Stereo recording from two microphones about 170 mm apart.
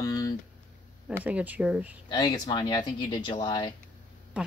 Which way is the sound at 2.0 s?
25° left (ahead or behind).